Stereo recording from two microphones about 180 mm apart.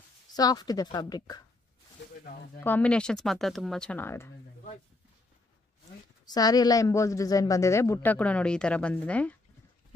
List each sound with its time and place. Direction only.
0.3 s a woman's voice: 20° left (ahead or behind)
2.6 s speech: 10° left (ahead or behind)
6.2 s a woman's voice: 20° left (ahead or behind)